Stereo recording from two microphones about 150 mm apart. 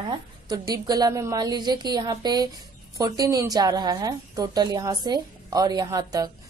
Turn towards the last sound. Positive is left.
turn(degrees=-25)  # may be behind; listen again after turning